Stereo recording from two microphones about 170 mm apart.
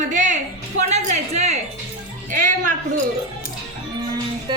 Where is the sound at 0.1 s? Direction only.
45° right (ahead or behind).